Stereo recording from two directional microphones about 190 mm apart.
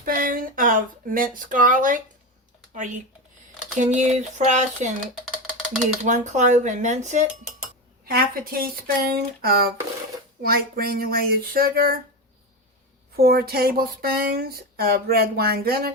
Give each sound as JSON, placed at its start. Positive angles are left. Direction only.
{"t": 0.0, "sound": "speech", "side_deg": -45}
{"t": 6.1, "sound": "speech", "side_deg": -40}
{"t": 8.0, "sound": "speech", "side_deg": -50}
{"t": 13.1, "sound": "speech", "side_deg": -55}